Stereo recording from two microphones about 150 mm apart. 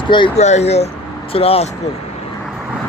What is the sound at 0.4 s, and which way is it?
Speech, 50° left (ahead or behind).